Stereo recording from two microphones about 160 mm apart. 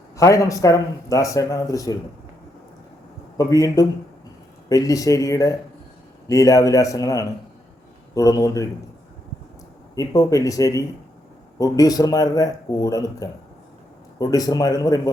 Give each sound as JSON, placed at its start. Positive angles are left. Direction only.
{"t": 0.2, "sound": "speech", "side_deg": 20}
{"t": 3.3, "sound": "speech", "side_deg": 20}
{"t": 9.9, "sound": "speech", "side_deg": 20}